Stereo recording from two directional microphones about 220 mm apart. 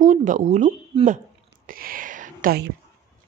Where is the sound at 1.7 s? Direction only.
40° right (ahead or behind).